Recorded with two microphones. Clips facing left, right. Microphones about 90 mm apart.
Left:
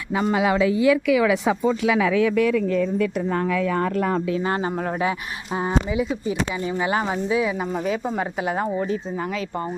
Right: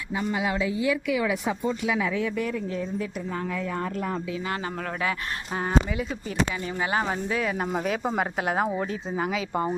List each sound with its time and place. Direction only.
0.2 s speech: 75° left (ahead or behind)
4.4 s speech: 30° left (ahead or behind)
5.5 s speech: 15° left (ahead or behind)
7.7 s speech: 10° right (ahead or behind)